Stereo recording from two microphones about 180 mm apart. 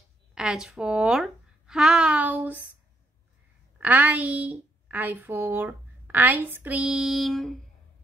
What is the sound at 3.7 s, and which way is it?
A woman's voice, 10° right (ahead or behind).